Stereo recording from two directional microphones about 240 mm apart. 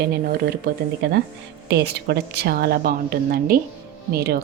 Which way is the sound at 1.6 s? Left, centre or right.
Right.